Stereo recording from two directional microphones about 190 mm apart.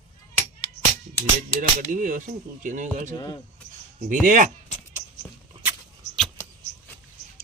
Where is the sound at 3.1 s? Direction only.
20° left (ahead or behind).